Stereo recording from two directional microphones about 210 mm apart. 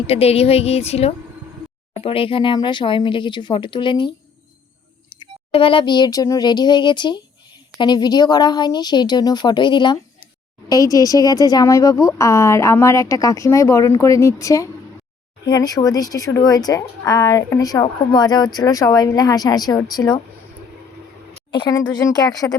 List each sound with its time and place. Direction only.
0.1 s speech: 30° left (ahead or behind)
5.2 s speech: 25° left (ahead or behind)
21.5 s speech: 20° left (ahead or behind)